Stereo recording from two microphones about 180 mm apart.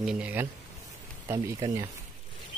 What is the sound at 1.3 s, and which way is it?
Speech, 20° right (ahead or behind).